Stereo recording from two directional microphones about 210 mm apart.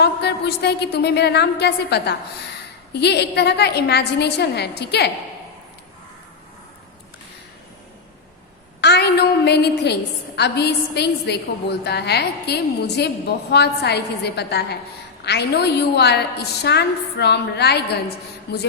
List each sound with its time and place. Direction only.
0.0 s a sound: 50° left (ahead or behind)
2.9 s a woman's voice: 50° left (ahead or behind)
8.8 s a woman's voice: 50° left (ahead or behind)